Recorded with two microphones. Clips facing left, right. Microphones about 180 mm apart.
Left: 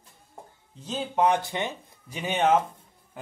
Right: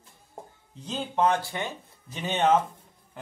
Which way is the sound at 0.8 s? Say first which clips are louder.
Left 1 dB; 5° left (ahead or behind).